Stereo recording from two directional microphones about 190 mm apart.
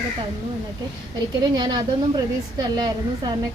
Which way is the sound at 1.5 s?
25° right (ahead or behind).